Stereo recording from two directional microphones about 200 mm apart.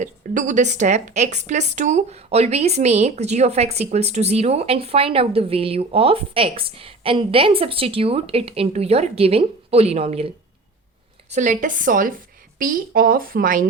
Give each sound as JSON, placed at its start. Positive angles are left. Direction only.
{"t": 0.0, "sound": "a woman's voice", "side_deg": -40}